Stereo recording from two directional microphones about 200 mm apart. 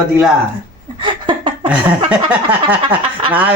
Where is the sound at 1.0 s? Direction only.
25° right (ahead or behind).